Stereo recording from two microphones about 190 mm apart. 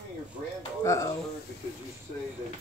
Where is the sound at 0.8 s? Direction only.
15° left (ahead or behind).